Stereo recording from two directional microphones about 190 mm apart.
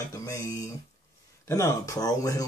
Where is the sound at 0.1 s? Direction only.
15° left (ahead or behind).